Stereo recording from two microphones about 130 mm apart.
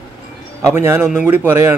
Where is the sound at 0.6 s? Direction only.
20° right (ahead or behind).